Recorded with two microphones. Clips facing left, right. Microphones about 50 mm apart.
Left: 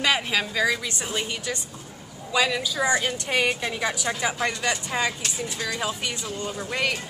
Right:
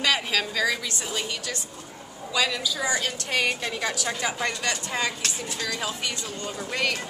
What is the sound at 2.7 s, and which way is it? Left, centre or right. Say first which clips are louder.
Speech: left 4 dB; left.